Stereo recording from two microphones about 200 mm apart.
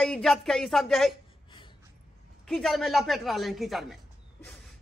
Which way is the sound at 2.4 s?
Centre (ahead or behind).